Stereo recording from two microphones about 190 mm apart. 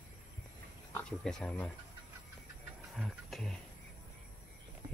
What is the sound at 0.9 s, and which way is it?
Speech, 5° left (ahead or behind).